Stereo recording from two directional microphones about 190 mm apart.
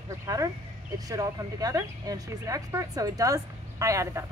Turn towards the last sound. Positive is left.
turn(degrees=-15)  # may be behind; listen again after turning